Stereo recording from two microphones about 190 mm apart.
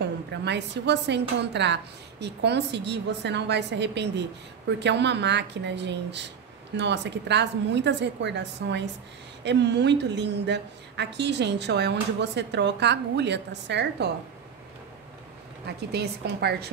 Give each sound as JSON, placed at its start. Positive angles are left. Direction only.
{"t": 0.3, "sound": "a woman's voice", "side_deg": -65}
{"t": 15.6, "sound": "a woman's voice", "side_deg": -60}